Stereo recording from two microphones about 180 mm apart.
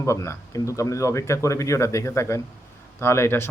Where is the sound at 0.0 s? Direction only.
15° left (ahead or behind).